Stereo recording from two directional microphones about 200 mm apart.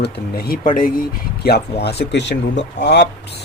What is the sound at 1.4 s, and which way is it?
Speech, 55° left (ahead or behind).